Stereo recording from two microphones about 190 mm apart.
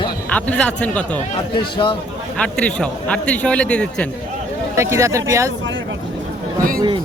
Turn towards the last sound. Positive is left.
turn(degrees=-20)  # may be behind; listen again after turning